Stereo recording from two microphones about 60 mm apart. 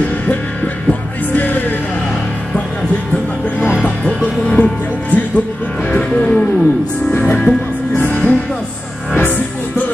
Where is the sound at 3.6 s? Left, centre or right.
Centre.